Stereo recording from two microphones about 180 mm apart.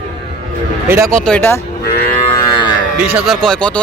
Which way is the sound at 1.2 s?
10° left (ahead or behind).